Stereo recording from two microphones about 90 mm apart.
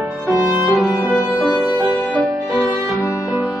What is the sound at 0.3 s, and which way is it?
Music, 15° right (ahead or behind).